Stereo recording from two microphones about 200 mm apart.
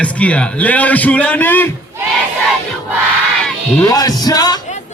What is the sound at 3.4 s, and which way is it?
Music, 5° left (ahead or behind).